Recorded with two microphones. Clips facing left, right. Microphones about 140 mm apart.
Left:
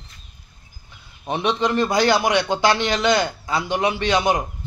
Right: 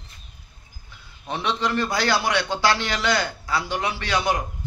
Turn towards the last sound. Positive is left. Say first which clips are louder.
# left 4 dB
turn(degrees=20)  # may be behind; listen again after turning